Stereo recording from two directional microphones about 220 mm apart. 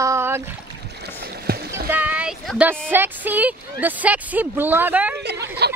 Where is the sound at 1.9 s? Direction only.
5° right (ahead or behind).